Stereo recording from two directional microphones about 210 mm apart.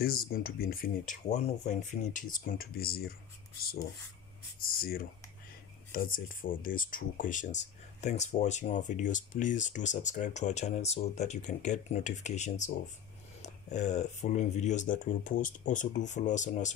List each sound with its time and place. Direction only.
0.0 s speech: 45° left (ahead or behind)
4.6 s speech: 45° left (ahead or behind)